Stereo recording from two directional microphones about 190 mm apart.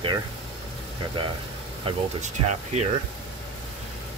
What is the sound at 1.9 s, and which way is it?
Speech, 35° right (ahead or behind).